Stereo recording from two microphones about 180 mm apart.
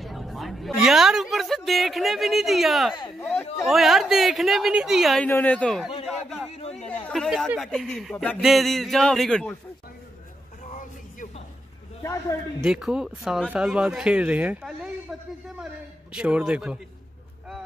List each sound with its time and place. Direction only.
0.0 s a sound: centre (ahead or behind)
3.6 s speech: centre (ahead or behind)
7.1 s a sound: centre (ahead or behind)
7.4 s speech: centre (ahead or behind)
10.6 s music: 45° left (ahead or behind)
12.0 s speech: 20° left (ahead or behind)
12.6 s a man's voice: 5° right (ahead or behind)